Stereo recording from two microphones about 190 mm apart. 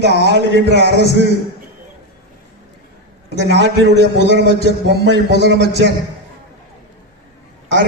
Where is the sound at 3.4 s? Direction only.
65° right (ahead or behind).